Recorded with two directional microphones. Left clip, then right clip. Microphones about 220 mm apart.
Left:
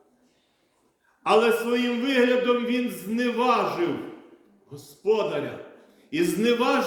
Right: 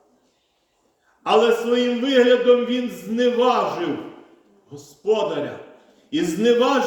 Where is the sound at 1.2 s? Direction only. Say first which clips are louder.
Right 3 dB; centre (ahead or behind).